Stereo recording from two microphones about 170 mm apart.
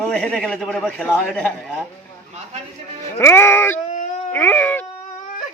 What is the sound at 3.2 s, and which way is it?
Speech, 15° left (ahead or behind).